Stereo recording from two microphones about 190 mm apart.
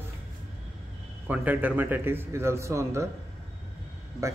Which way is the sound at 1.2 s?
10° right (ahead or behind).